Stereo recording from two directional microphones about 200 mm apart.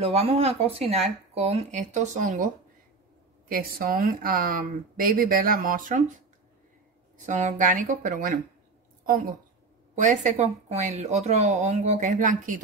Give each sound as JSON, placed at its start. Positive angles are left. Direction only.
{"t": 0.0, "sound": "speech", "side_deg": -30}
{"t": 7.2, "sound": "a woman's voice", "side_deg": -40}